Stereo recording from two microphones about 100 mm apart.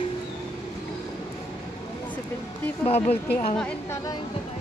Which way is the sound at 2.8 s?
90° left.